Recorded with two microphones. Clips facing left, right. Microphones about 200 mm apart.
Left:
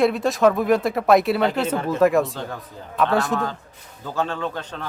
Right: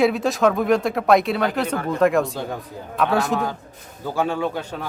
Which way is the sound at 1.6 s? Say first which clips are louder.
Left 1 dB; 25° left (ahead or behind).